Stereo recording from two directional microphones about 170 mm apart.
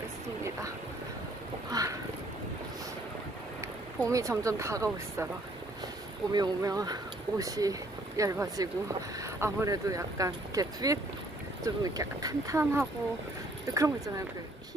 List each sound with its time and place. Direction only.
1.7 s a sound: 20° right (ahead or behind)
4.1 s speech: 20° right (ahead or behind)
6.3 s speech: 20° right (ahead or behind)